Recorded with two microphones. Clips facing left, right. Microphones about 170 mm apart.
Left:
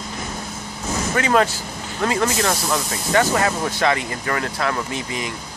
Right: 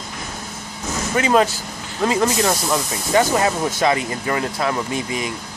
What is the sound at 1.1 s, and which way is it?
Speech, 20° right (ahead or behind).